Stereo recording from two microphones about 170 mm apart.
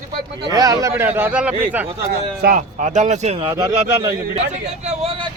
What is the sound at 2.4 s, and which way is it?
Speech, 50° right (ahead or behind).